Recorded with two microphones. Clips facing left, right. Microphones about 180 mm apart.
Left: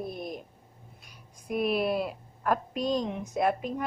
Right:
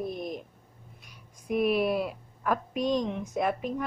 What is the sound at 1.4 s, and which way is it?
A woman's voice, 5° right (ahead or behind).